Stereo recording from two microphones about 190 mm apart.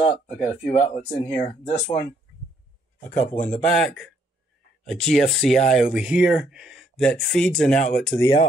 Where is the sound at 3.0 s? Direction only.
40° left (ahead or behind).